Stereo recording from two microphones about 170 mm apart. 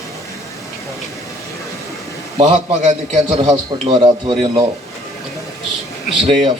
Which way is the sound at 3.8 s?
25° right (ahead or behind).